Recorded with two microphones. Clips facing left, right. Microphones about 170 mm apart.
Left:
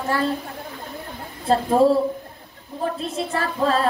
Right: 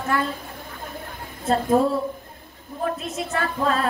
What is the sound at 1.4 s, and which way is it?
Speech, 30° left (ahead or behind).